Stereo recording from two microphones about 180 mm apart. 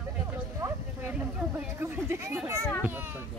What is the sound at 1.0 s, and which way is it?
Speech, 10° right (ahead or behind).